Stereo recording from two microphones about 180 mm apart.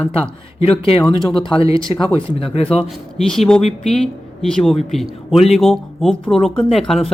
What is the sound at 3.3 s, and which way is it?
Speech, 5° left (ahead or behind).